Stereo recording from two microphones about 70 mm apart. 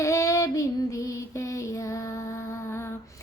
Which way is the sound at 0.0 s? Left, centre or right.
Left.